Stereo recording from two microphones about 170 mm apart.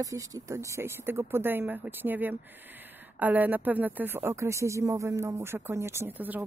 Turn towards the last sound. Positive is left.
turn(degrees=-10)  # may be behind; listen again after turning